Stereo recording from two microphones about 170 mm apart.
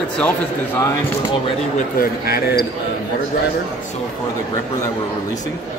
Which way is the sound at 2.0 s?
65° left (ahead or behind).